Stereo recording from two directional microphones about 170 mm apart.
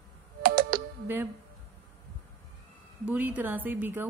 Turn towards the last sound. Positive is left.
turn(degrees=-10)  # may be behind; listen again after turning